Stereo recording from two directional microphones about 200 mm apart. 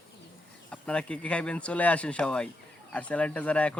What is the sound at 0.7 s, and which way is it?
Speech, 5° left (ahead or behind).